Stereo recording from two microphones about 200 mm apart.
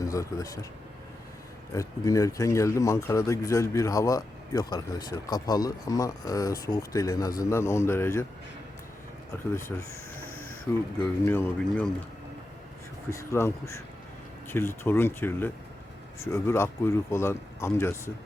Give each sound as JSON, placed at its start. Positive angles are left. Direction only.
{"t": 0.0, "sound": "speech", "side_deg": 15}
{"t": 1.7, "sound": "speech", "side_deg": 15}
{"t": 9.6, "sound": "speech", "side_deg": 15}
{"t": 13.1, "sound": "speech", "side_deg": 15}